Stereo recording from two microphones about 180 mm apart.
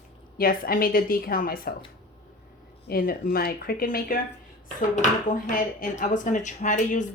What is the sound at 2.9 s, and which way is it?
Speech, 55° left (ahead or behind).